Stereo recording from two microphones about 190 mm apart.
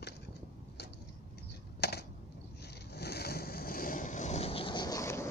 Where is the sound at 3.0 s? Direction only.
55° left (ahead or behind).